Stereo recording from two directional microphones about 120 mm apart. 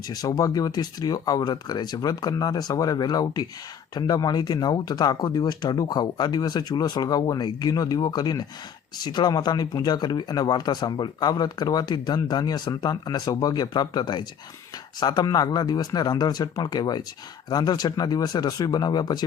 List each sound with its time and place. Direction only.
0.1 s speech: 30° left (ahead or behind)